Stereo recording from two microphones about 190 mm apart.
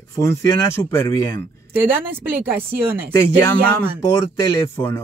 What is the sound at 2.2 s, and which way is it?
Speech, 10° right (ahead or behind).